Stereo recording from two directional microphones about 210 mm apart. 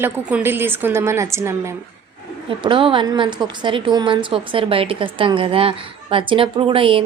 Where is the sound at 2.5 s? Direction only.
25° right (ahead or behind).